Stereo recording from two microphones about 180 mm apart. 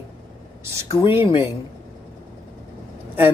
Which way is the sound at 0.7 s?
15° right (ahead or behind).